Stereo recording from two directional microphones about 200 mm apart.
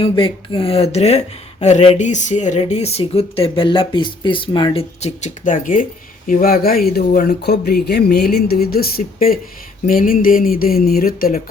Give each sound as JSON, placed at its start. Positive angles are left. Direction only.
{"t": 0.0, "sound": "speech", "side_deg": 25}